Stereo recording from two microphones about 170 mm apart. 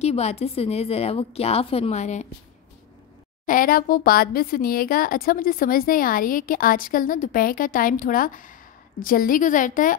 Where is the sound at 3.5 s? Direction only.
55° left (ahead or behind).